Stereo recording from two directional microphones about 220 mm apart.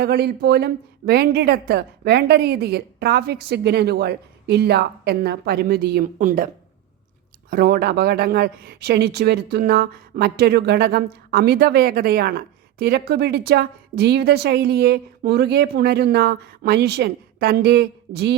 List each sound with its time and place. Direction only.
0.0 s a woman's voice: 45° right (ahead or behind)
7.5 s a woman's voice: 45° right (ahead or behind)